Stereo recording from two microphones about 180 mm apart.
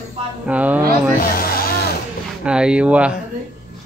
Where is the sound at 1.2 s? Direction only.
55° left (ahead or behind).